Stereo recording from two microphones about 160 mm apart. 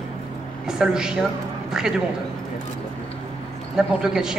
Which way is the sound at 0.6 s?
5° right (ahead or behind).